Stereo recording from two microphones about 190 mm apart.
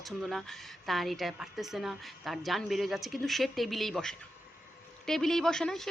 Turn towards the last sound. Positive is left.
turn(degrees=0)  # may be behind; listen again after turning